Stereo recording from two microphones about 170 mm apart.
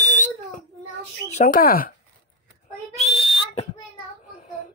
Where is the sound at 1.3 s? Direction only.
55° left (ahead or behind).